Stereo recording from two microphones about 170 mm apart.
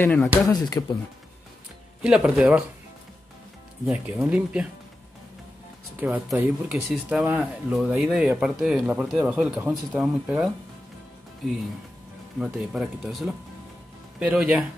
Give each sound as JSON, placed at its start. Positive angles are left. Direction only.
{"t": 0.0, "sound": "speech", "side_deg": 10}
{"t": 0.5, "sound": "speech", "side_deg": 25}
{"t": 2.0, "sound": "speech", "side_deg": -5}
{"t": 4.2, "sound": "speech", "side_deg": -5}
{"t": 5.9, "sound": "speech", "side_deg": -10}
{"t": 12.4, "sound": "speech", "side_deg": 0}